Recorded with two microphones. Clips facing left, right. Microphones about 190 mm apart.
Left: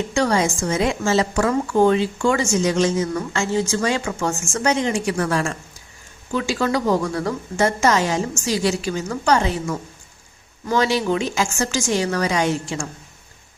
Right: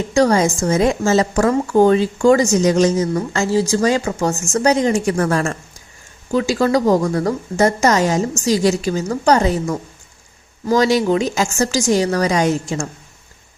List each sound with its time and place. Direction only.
0.1 s a woman's voice: 40° right (ahead or behind)